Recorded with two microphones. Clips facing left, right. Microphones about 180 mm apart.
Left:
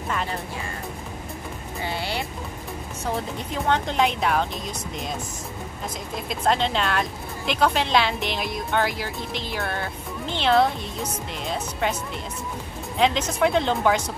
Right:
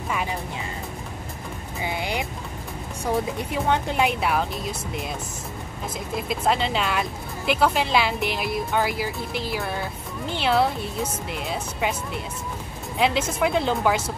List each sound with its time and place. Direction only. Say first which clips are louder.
0.1 s music: right 1 dB; 10° right (ahead or behind)
1.8 s music: right 1 dB; 15° right (ahead or behind)
3.3 s speech: right 1 dB; 10° right (ahead or behind)
6.1 s speech: even; 5° right (ahead or behind)